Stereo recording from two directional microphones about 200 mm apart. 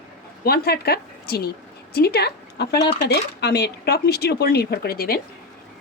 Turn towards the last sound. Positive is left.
turn(degrees=50)  # may be behind; listen again after turning